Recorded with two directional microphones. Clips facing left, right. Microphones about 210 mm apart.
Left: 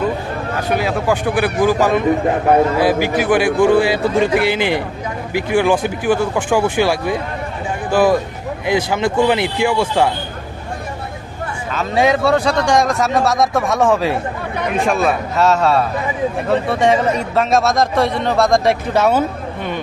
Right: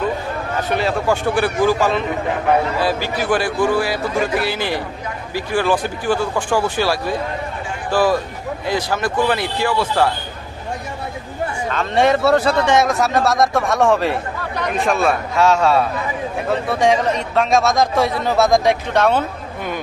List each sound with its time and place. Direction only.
0.7 s a man's voice: 15° left (ahead or behind)
11.7 s a man's voice: 5° left (ahead or behind)